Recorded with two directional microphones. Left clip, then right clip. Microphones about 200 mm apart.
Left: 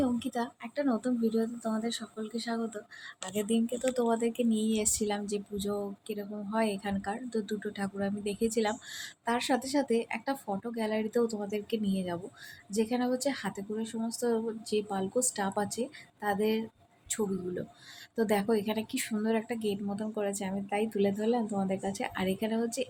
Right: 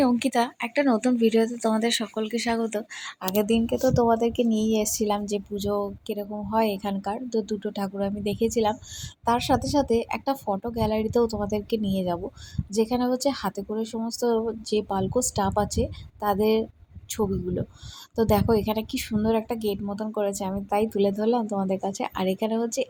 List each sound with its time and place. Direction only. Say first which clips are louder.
0.0 s a woman's voice: right 10 dB; 20° right (ahead or behind)